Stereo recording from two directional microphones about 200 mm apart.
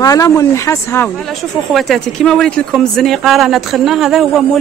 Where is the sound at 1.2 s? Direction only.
Centre (ahead or behind).